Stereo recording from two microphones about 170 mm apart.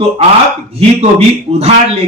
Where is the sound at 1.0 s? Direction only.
40° right (ahead or behind).